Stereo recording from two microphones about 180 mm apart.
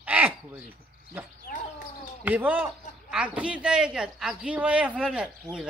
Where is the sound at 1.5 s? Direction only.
50° left (ahead or behind).